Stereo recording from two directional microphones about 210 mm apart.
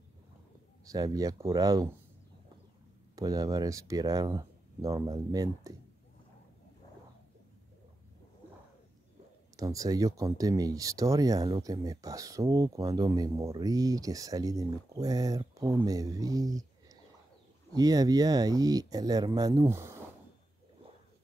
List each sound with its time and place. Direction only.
0.8 s speech: 20° right (ahead or behind)
3.2 s speech: 15° right (ahead or behind)
9.6 s speech: 15° right (ahead or behind)